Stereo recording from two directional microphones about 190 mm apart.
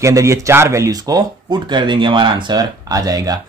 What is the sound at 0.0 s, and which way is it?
Speech, 15° right (ahead or behind).